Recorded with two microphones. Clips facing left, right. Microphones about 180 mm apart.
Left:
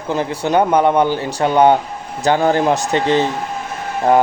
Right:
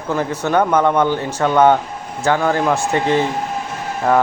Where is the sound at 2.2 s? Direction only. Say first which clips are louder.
Left 2 dB; 30° left (ahead or behind).